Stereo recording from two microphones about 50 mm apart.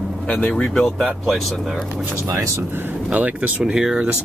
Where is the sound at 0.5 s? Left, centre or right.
Centre.